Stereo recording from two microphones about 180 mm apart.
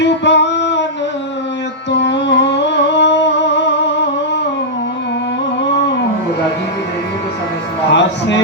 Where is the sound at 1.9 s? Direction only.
75° left (ahead or behind).